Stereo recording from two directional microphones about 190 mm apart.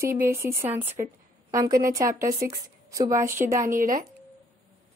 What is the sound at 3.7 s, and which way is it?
Speech, 45° right (ahead or behind).